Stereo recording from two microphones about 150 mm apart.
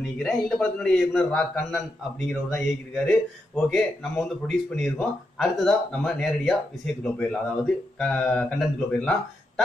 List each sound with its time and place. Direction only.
0.0 s a man's voice: 5° left (ahead or behind)